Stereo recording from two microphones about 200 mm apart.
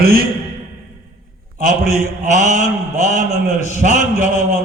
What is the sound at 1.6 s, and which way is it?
A man's voice, 35° left (ahead or behind).